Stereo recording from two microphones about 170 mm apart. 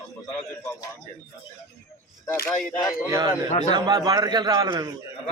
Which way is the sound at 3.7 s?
25° right (ahead or behind).